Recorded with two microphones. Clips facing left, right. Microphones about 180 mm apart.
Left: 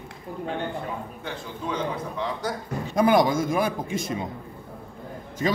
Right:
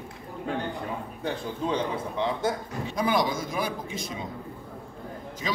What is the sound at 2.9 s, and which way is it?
A man's voice, 50° left (ahead or behind).